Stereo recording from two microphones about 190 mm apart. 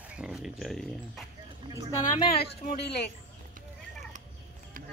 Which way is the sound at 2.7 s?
55° left (ahead or behind).